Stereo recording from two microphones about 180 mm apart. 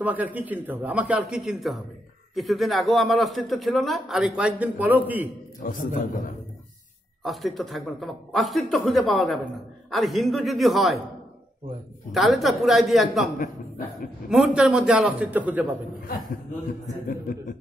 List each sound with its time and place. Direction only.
0.0 s a man's voice: 10° right (ahead or behind)
5.6 s a man's voice: 50° left (ahead or behind)
7.2 s a man's voice: centre (ahead or behind)
12.1 s a man's voice: centre (ahead or behind)
14.3 s a man's voice: centre (ahead or behind)
17.1 s chuckle: 50° left (ahead or behind)